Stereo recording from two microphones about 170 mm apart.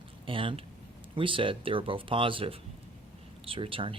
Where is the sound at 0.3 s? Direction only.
30° right (ahead or behind).